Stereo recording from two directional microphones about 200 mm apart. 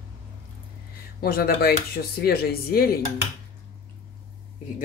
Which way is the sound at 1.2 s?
50° left (ahead or behind).